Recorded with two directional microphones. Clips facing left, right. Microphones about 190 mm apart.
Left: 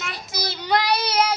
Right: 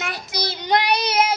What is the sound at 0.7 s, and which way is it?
Child singing, 20° right (ahead or behind).